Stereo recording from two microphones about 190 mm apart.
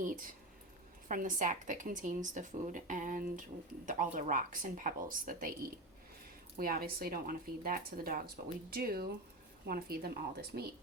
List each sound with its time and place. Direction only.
0.0 s a sound: 45° right (ahead or behind)
1.0 s speech: 45° right (ahead or behind)
6.6 s speech: 50° right (ahead or behind)